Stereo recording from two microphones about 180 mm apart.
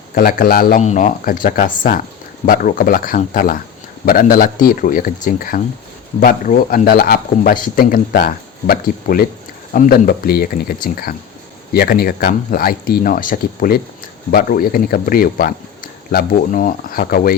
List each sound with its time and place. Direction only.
0.1 s speech: 55° left (ahead or behind)